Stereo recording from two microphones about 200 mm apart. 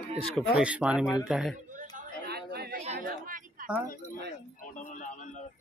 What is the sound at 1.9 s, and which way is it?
Chatter, 50° right (ahead or behind).